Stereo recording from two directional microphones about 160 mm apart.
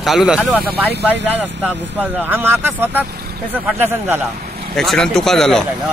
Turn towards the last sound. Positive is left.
turn(degrees=5)  # may be behind; listen again after turning